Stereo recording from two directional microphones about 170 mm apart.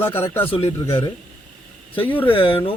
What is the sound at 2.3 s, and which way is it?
Speech, 30° left (ahead or behind).